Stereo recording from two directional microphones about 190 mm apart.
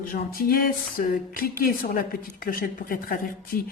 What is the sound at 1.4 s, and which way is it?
Speech, 50° left (ahead or behind).